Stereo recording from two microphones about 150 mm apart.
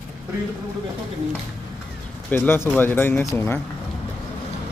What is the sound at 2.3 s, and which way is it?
Speech, 15° left (ahead or behind).